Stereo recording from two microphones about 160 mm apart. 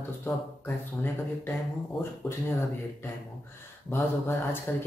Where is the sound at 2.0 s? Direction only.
15° left (ahead or behind).